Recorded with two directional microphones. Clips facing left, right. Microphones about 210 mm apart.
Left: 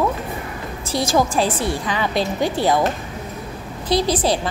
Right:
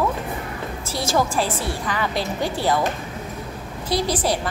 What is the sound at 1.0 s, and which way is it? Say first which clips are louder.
A woman's voice: left 3 dB; 15° left (ahead or behind).